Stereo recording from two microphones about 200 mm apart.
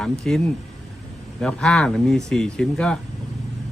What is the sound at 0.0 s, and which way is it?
Speech, centre (ahead or behind).